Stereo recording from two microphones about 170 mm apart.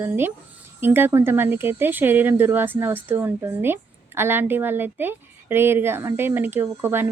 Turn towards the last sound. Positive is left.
turn(degrees=-15)  # may be behind; listen again after turning